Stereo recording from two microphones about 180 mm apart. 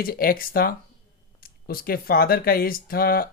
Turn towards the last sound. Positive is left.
turn(degrees=55)  # may be behind; listen again after turning